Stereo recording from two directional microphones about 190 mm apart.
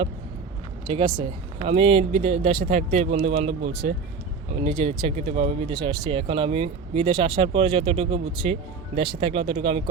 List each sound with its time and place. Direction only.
0.9 s speech: 25° right (ahead or behind)